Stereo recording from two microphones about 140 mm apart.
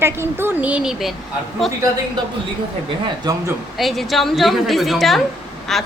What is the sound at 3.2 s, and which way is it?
Speech, 25° right (ahead or behind).